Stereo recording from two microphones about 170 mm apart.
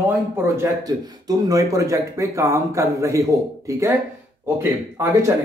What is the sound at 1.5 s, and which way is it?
Speech, 20° right (ahead or behind).